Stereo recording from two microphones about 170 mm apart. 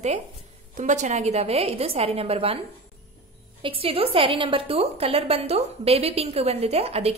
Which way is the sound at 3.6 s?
35° right (ahead or behind).